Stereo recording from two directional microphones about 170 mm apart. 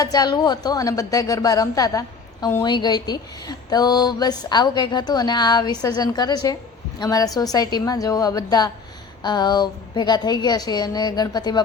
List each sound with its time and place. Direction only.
0.0 s a woman's voice: 25° left (ahead or behind)